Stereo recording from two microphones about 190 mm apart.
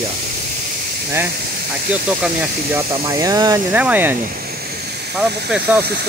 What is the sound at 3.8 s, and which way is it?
Speech, 10° right (ahead or behind).